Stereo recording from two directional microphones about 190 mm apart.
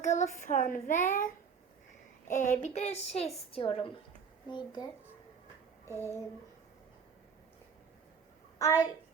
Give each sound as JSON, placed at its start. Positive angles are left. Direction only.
{"t": 0.0, "sound": "child singing", "side_deg": 40}
{"t": 2.3, "sound": "a woman's voice", "side_deg": 40}
{"t": 5.9, "sound": "child singing", "side_deg": -15}
{"t": 8.5, "sound": "a child's voice", "side_deg": 20}